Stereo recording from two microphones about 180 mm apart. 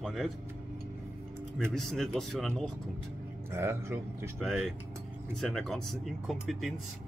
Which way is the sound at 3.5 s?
15° right (ahead or behind).